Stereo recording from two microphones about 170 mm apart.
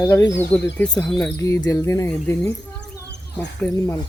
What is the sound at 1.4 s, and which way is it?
Speech, 20° left (ahead or behind).